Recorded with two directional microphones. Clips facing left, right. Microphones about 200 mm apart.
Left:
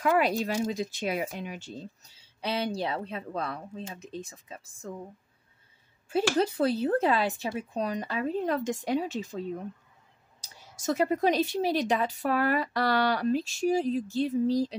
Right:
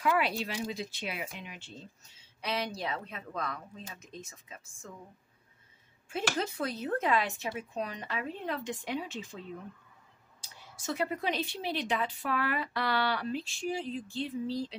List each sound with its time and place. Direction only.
0.0 s speech: 45° left (ahead or behind)
6.0 s speech: 35° left (ahead or behind)